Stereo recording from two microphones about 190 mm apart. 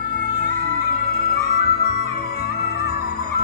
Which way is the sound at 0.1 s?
50° left (ahead or behind).